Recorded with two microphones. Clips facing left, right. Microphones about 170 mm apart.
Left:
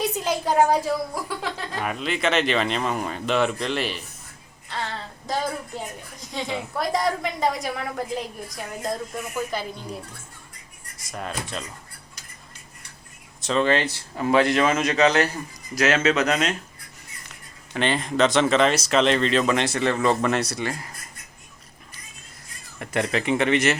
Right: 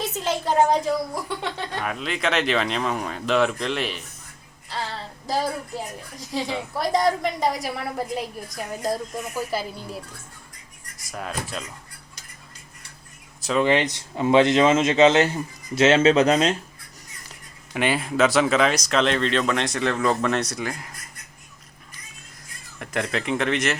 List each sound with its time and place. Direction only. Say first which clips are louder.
0.0 s a woman's voice: left 1 dB; 10° left (ahead or behind)
4.7 s female singing: even; centre (ahead or behind)
6.1 s a woman's voice: right 2 dB; centre (ahead or behind)
10.9 s a woman's voice: even; centre (ahead or behind)
13.4 s speech: right 1 dB; 5° right (ahead or behind)
13.7 s speech: right 1 dB; 15° right (ahead or behind)
17.7 s a woman's voice: even; 10° right (ahead or behind)
22.8 s a woman's voice: left 2 dB; centre (ahead or behind)